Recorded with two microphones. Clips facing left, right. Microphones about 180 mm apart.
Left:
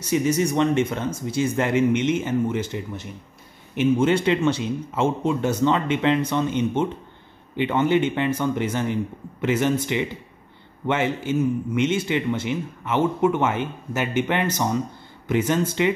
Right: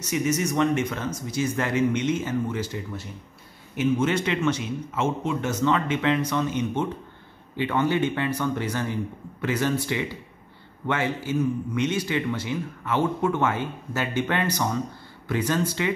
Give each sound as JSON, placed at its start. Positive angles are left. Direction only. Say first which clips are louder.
{"t": 0.0, "sound": "a man's voice", "louder": "left 4 dB", "side_deg": 30}